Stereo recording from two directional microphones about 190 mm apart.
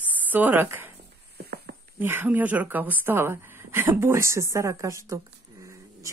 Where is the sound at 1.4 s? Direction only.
55° right (ahead or behind).